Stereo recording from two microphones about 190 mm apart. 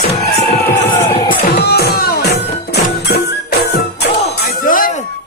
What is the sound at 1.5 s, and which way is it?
Music, 55° left (ahead or behind).